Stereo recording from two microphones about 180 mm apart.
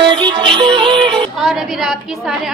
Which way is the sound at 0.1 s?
30° right (ahead or behind).